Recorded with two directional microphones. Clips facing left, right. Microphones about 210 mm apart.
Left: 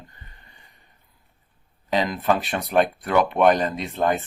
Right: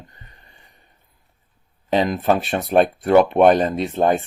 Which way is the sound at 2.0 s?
25° right (ahead or behind).